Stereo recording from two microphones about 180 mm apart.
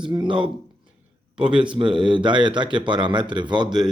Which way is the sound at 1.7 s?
25° right (ahead or behind).